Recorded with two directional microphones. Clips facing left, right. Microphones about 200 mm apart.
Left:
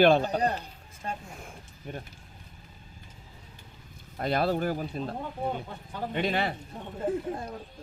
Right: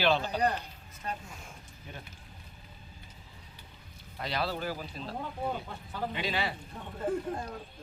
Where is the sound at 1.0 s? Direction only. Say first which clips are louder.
Left 2 dB; 30° left (ahead or behind).